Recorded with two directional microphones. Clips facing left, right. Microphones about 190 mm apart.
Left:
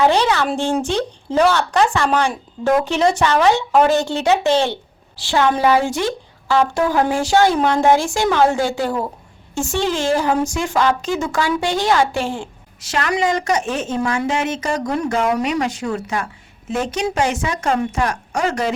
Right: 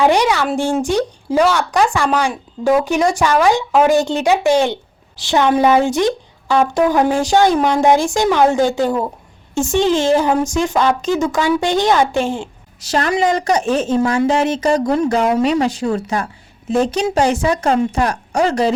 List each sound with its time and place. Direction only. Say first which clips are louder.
0.0 s a woman's voice: right 2 dB; 15° right (ahead or behind)
12.8 s a woman's voice: right 3 dB; 35° right (ahead or behind)